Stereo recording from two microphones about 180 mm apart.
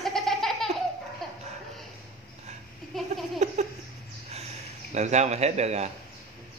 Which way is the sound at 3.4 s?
40° right (ahead or behind).